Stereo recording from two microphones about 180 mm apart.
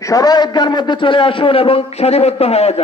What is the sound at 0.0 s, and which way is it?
A man's voice, 20° left (ahead or behind).